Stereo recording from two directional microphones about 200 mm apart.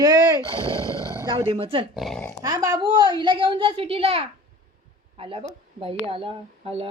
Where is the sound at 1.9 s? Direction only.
Centre (ahead or behind).